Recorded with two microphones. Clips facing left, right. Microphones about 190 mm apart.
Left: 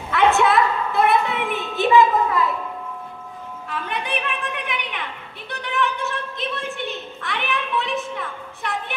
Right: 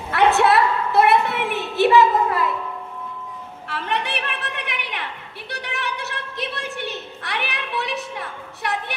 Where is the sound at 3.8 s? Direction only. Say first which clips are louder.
Right 1 dB; 80° right.